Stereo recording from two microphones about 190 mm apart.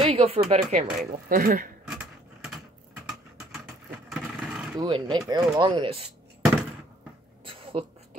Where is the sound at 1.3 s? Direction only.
45° right (ahead or behind).